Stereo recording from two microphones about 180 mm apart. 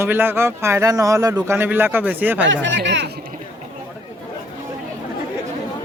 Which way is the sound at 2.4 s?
90° right.